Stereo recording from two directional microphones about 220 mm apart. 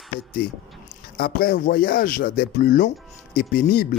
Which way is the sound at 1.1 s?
40° left (ahead or behind).